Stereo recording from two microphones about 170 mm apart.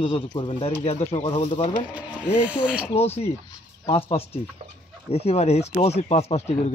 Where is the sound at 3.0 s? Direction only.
35° left (ahead or behind).